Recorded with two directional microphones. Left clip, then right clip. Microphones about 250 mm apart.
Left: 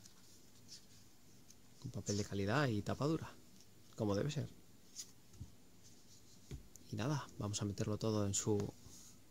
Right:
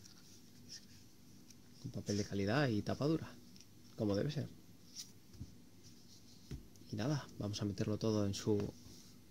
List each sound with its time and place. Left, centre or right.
2.0 s speech: centre
6.9 s speech: centre